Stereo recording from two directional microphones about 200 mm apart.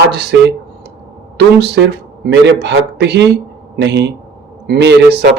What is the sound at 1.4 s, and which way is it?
A man's voice, 55° right (ahead or behind).